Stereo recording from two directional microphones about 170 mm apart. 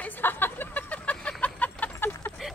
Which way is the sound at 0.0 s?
10° left (ahead or behind).